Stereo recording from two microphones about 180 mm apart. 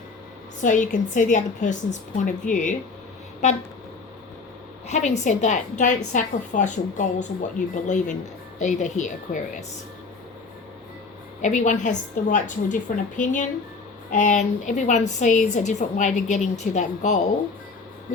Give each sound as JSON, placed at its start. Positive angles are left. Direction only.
{"t": 0.6, "sound": "a woman's voice", "side_deg": 45}
{"t": 3.4, "sound": "toot", "side_deg": 40}
{"t": 4.9, "sound": "a woman's voice", "side_deg": 40}
{"t": 11.4, "sound": "a woman's voice", "side_deg": 40}